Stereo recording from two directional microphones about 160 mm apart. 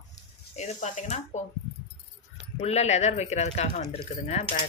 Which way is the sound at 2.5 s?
45° left (ahead or behind).